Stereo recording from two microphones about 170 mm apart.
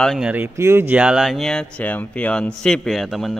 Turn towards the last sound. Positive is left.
turn(degrees=0)  # may be behind; listen again after turning